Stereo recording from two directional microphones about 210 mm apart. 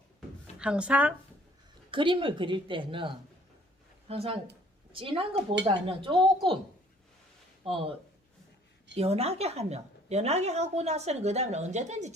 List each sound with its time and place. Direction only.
0.6 s speech: 5° right (ahead or behind)
1.9 s a woman's voice: 25° right (ahead or behind)
4.1 s a woman's voice: 25° right (ahead or behind)
7.6 s speech: 25° right (ahead or behind)
9.0 s a woman's voice: 30° right (ahead or behind)